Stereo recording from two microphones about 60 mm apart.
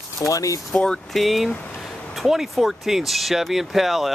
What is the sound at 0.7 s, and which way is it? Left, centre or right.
Speech, centre.